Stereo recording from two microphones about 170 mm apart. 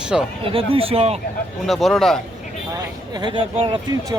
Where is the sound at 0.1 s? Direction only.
Centre (ahead or behind).